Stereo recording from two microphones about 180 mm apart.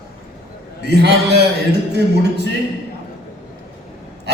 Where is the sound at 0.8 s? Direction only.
70° right (ahead or behind).